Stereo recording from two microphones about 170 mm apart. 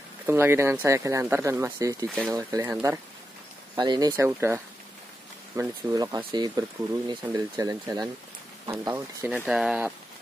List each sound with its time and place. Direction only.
0.3 s speech: 15° right (ahead or behind)
2.0 s speech: centre (ahead or behind)
2.3 s speech: 20° right (ahead or behind)
3.7 s speech: 25° right (ahead or behind); by 9.9 s 5° right (ahead or behind)